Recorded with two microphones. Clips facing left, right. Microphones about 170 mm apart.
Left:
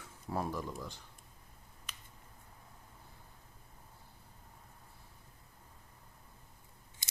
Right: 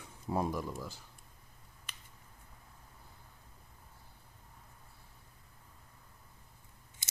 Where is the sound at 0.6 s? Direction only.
5° right (ahead or behind).